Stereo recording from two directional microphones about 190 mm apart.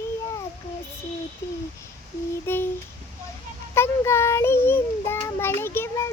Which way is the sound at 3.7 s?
15° left (ahead or behind).